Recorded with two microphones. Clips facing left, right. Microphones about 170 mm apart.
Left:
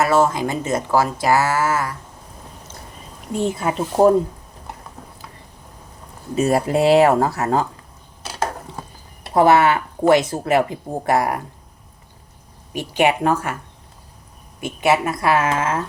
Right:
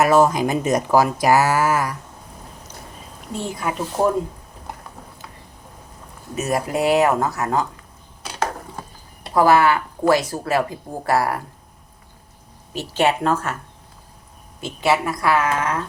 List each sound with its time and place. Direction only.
0.0 s speech: 15° right (ahead or behind)
3.6 s speech: 30° left (ahead or behind)
6.3 s speech: 30° left (ahead or behind)
9.3 s speech: 25° left (ahead or behind)
12.7 s a woman's voice: 15° left (ahead or behind)
14.6 s speech: 20° left (ahead or behind)